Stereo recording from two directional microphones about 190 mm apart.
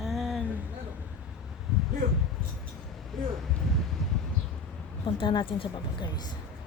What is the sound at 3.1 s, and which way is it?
Speech, centre (ahead or behind).